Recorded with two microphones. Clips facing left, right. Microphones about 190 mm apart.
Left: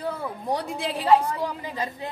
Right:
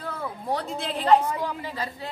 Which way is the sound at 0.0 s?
15° left (ahead or behind).